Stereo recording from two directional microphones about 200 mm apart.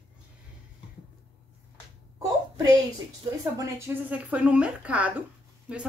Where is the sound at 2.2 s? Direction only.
15° right (ahead or behind).